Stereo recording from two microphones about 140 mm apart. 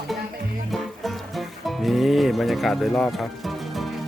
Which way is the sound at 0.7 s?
Centre (ahead or behind).